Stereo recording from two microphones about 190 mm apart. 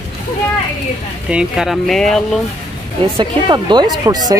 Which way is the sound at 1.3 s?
5° right (ahead or behind).